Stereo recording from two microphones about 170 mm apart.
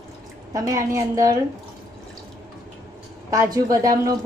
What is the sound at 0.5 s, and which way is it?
Speech, 20° right (ahead or behind).